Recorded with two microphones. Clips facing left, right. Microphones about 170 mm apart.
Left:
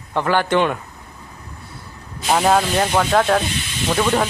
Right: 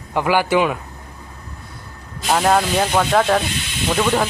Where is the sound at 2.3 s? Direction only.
5° left (ahead or behind).